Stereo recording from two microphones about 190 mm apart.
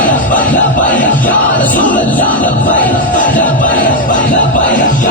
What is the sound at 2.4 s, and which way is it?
Music, 45° left (ahead or behind).